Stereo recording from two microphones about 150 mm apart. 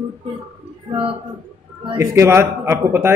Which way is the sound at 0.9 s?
40° right (ahead or behind).